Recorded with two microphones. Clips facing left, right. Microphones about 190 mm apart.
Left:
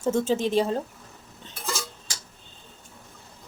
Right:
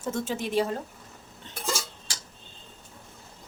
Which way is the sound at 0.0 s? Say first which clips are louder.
Left 7 dB; 25° left (ahead or behind).